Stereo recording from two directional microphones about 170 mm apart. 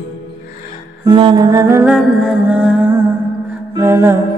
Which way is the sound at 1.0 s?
25° right (ahead or behind).